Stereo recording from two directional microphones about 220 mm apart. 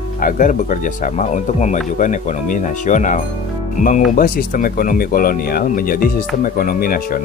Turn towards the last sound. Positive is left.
turn(degrees=40)  # may be behind; listen again after turning